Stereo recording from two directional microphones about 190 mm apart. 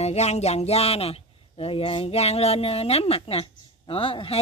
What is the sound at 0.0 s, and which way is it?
A man's voice, 35° left (ahead or behind).